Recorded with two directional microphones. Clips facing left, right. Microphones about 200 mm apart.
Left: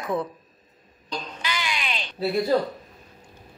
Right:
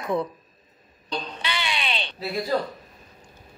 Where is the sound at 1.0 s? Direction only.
30° right (ahead or behind).